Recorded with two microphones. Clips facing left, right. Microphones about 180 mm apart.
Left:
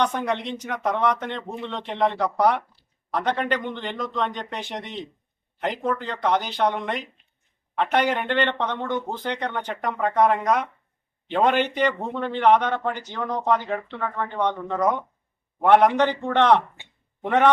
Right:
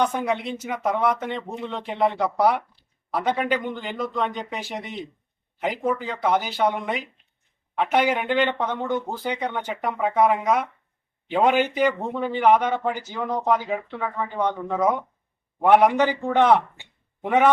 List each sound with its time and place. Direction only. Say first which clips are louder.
0.0 s speech: right 1 dB; 5° right (ahead or behind)